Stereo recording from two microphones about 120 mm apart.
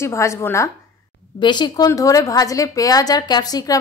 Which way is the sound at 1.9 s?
30° left (ahead or behind).